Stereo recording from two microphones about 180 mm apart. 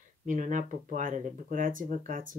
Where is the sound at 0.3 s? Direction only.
45° right (ahead or behind).